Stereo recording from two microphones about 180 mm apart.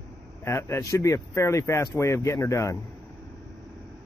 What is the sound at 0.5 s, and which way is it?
Speech, 15° left (ahead or behind).